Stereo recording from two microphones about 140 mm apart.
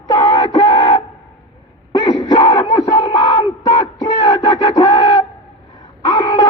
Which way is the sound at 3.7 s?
45° left (ahead or behind).